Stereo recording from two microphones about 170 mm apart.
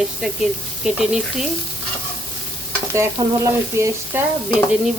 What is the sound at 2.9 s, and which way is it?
Stir, 15° right (ahead or behind).